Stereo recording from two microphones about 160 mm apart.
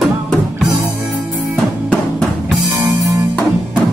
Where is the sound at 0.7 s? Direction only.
25° right (ahead or behind).